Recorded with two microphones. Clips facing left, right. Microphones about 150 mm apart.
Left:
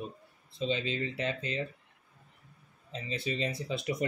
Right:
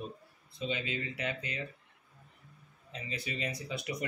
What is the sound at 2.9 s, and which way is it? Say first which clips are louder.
Speech: left 5 dB; 25° left (ahead or behind).